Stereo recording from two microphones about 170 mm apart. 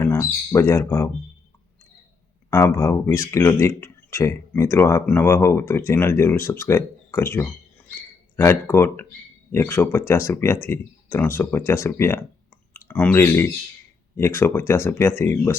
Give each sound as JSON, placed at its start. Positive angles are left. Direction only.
{"t": 0.0, "sound": "speech", "side_deg": 15}
{"t": 2.5, "sound": "speech", "side_deg": 15}